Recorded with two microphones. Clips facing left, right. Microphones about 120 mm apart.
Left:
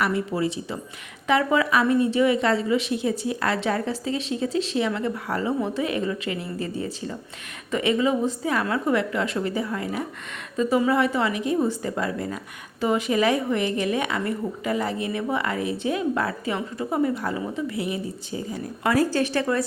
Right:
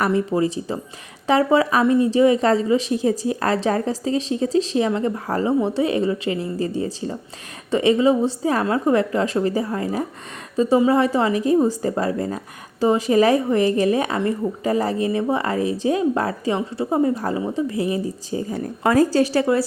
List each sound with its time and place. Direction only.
0.0 s a woman's voice: 35° right (ahead or behind)